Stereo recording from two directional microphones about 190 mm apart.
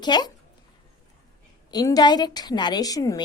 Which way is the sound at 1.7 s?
20° left (ahead or behind).